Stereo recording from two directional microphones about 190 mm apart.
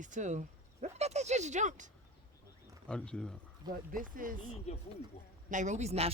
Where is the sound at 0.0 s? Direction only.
40° right (ahead or behind).